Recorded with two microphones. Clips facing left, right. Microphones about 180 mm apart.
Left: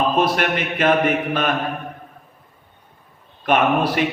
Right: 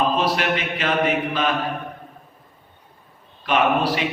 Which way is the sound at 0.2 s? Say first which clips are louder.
Left 3 dB; 55° left (ahead or behind).